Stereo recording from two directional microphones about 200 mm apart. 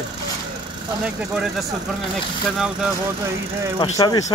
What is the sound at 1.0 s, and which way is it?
Speech, 5° right (ahead or behind).